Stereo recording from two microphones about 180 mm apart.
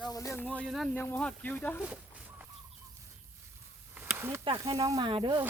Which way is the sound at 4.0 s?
15° right (ahead or behind).